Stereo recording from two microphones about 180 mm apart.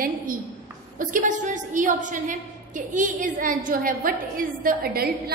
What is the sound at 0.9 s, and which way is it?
A woman's voice, 45° right (ahead or behind).